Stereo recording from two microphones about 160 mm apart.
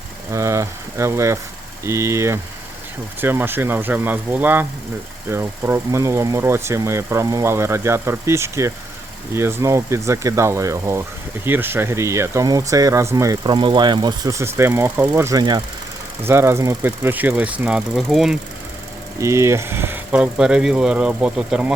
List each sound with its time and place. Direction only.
0.3 s speech: 20° right (ahead or behind); by 18.3 s centre (ahead or behind)
19.2 s speech: 20° right (ahead or behind)